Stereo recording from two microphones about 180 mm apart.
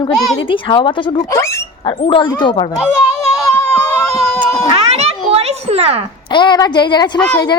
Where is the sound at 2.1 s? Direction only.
25° left (ahead or behind).